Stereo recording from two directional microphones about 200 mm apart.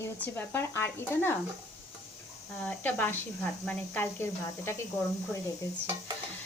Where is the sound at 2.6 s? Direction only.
10° left (ahead or behind).